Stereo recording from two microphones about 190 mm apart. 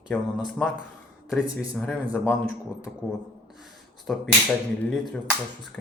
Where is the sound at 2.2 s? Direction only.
15° left (ahead or behind).